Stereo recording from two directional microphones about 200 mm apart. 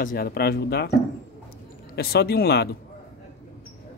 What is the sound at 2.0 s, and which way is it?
Speech, 50° left (ahead or behind).